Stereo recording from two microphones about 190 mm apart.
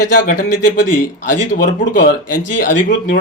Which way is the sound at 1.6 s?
50° left (ahead or behind).